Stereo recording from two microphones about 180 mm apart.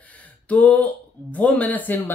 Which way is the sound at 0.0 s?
10° left (ahead or behind).